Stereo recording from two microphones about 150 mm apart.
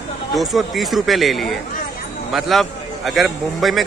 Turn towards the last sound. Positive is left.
turn(degrees=0)  # may be behind; listen again after turning